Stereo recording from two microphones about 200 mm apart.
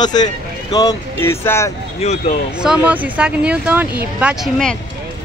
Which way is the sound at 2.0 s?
35° left (ahead or behind).